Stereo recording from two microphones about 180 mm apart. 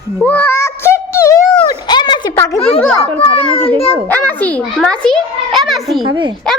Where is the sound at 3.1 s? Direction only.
10° left (ahead or behind).